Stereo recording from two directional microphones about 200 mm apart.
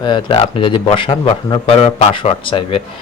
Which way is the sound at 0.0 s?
25° left (ahead or behind).